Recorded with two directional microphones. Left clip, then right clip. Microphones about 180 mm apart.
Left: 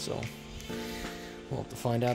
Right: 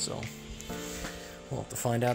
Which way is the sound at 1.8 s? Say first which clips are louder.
Right 1 dB; 10° left (ahead or behind).